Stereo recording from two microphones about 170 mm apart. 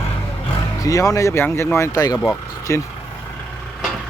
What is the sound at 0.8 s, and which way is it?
Speech, 20° left (ahead or behind).